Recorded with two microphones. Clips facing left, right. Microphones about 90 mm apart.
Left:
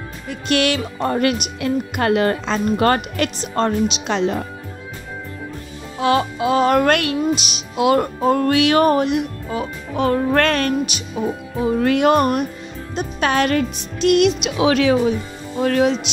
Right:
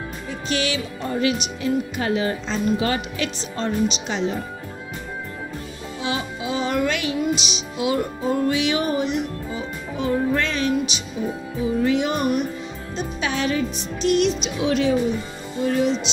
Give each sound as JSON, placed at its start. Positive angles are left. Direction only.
{"t": 0.3, "sound": "speech", "side_deg": 65}
{"t": 5.9, "sound": "speech", "side_deg": 60}